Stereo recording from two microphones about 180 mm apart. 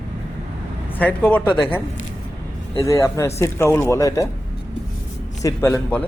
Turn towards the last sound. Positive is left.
turn(degrees=10)  # may be behind; listen again after turning